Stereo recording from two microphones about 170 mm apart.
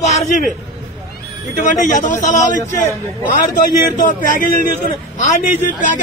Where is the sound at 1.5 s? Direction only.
50° left (ahead or behind).